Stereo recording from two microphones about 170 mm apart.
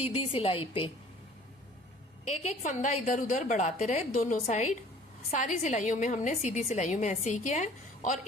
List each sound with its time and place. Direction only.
0.0 s a woman's voice: 35° left (ahead or behind)
2.2 s a woman's voice: 40° left (ahead or behind)